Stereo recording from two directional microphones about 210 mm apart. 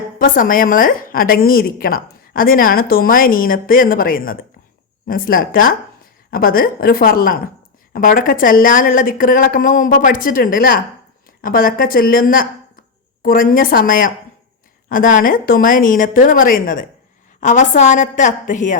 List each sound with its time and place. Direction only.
0.2 s a woman's voice: 40° left (ahead or behind)